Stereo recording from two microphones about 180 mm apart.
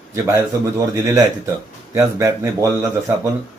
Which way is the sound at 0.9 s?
15° right (ahead or behind).